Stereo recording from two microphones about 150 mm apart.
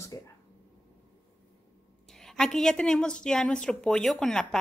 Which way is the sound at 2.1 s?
5° left (ahead or behind).